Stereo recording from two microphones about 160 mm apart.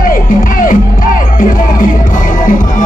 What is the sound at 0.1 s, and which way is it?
Music, 60° left (ahead or behind).